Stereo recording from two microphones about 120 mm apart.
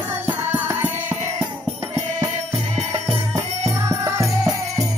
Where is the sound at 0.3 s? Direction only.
15° right (ahead or behind).